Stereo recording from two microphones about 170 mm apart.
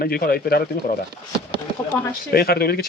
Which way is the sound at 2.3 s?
65° left (ahead or behind).